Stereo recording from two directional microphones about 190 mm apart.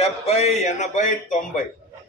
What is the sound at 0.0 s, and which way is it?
Speech, 35° left (ahead or behind).